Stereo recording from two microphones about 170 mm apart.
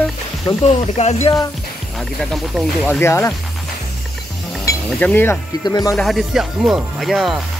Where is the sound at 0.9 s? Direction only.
40° left (ahead or behind).